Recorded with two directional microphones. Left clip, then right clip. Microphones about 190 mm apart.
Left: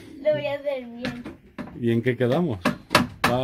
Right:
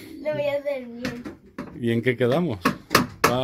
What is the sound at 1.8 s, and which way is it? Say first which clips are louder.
Speech: right 1 dB; 15° left (ahead or behind).